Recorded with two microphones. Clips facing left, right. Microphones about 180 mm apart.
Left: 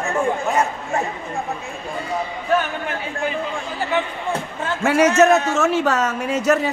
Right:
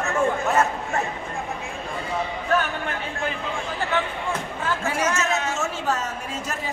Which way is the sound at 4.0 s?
15° left (ahead or behind).